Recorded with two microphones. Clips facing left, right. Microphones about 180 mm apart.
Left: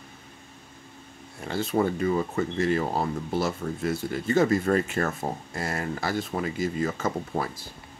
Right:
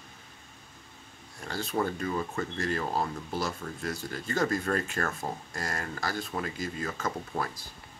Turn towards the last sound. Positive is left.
turn(degrees=40)  # may be behind; listen again after turning